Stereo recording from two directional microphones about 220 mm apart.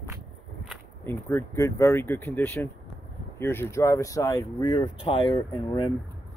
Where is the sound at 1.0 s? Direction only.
10° left (ahead or behind).